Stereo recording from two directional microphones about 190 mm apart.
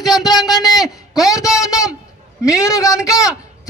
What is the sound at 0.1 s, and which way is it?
Speech, 20° left (ahead or behind).